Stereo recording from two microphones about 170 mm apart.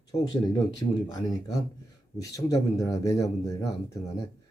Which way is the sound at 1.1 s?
20° left (ahead or behind).